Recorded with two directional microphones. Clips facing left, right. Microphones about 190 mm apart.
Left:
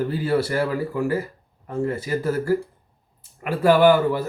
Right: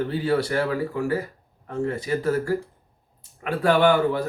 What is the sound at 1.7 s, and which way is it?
Speech, 5° left (ahead or behind).